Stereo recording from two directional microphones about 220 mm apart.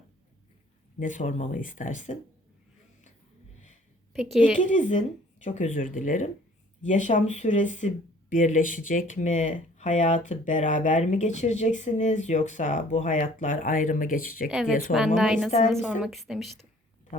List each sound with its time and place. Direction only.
0.9 s speech: 35° left (ahead or behind)
4.1 s a woman's voice: centre (ahead or behind)
4.5 s speech: 35° left (ahead or behind)
14.5 s a woman's voice: centre (ahead or behind)